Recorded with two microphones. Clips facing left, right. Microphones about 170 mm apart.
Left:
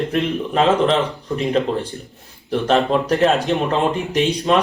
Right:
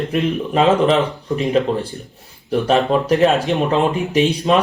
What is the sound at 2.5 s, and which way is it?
Speech, centre (ahead or behind).